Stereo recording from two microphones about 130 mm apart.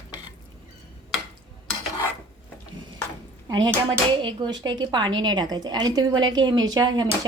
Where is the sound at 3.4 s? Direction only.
35° right (ahead or behind).